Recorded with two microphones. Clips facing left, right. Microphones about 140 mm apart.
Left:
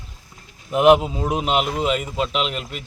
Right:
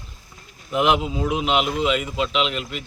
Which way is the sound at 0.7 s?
45° left (ahead or behind).